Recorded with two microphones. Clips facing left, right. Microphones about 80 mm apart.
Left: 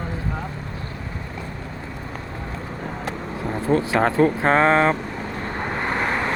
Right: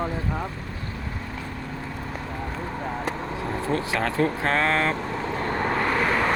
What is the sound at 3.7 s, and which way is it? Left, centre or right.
Speech, left.